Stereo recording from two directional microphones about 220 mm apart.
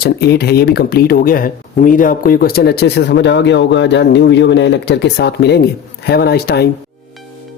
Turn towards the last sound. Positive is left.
turn(degrees=45)  # may be behind; listen again after turning